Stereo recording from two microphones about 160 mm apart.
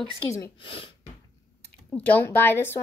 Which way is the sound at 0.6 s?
35° left (ahead or behind).